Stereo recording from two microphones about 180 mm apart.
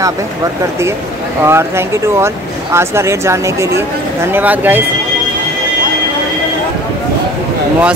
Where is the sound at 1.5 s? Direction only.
15° right (ahead or behind).